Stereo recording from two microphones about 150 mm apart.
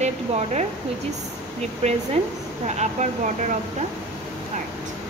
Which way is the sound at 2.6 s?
50° right (ahead or behind).